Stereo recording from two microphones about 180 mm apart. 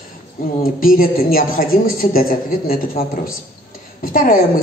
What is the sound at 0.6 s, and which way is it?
A woman's voice, 50° left (ahead or behind).